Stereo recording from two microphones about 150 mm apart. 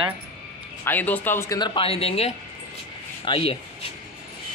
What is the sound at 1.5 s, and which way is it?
Speech, 30° left (ahead or behind).